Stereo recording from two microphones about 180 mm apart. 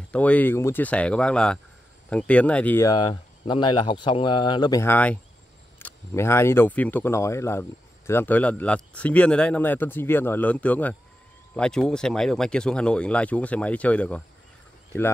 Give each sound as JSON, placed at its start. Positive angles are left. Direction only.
{"t": 0.1, "sound": "speech", "side_deg": 10}
{"t": 2.9, "sound": "speech", "side_deg": 25}